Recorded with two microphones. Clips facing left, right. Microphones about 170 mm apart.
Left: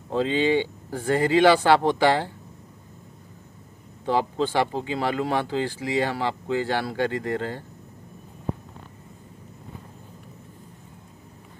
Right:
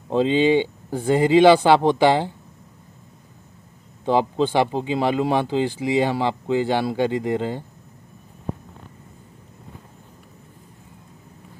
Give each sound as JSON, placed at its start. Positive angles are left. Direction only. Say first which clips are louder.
{"t": 0.1, "sound": "speech", "louder": "right 4 dB", "side_deg": -20}
{"t": 4.0, "sound": "speech", "louder": "right 4 dB", "side_deg": -20}